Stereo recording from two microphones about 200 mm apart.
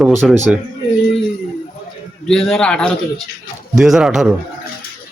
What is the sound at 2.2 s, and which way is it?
Speech, centre (ahead or behind).